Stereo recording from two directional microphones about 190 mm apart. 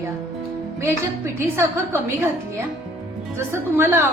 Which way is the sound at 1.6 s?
10° right (ahead or behind).